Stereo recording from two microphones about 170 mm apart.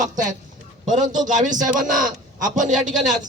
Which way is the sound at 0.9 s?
45° right (ahead or behind).